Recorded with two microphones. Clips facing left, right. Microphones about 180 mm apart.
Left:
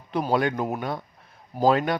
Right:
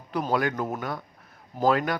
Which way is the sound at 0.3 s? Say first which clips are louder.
Left 2 dB; 20° left (ahead or behind).